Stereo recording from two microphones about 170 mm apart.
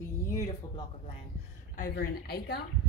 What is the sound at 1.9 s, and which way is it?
Speech, 70° left (ahead or behind).